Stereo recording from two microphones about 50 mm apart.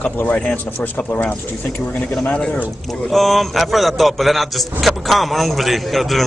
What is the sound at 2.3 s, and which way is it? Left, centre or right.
Speech, centre.